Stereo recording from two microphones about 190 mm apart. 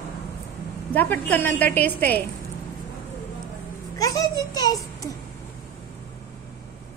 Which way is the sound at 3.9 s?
20° left (ahead or behind).